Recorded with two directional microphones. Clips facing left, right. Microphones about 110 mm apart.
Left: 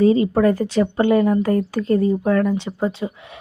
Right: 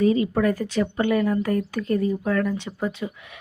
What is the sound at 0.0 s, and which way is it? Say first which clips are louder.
Speech: left 5 dB; 30° left (ahead or behind).